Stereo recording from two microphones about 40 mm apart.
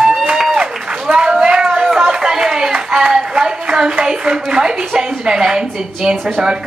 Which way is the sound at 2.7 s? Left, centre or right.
Centre.